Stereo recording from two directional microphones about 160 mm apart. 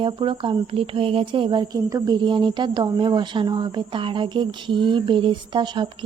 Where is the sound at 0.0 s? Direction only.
30° right (ahead or behind).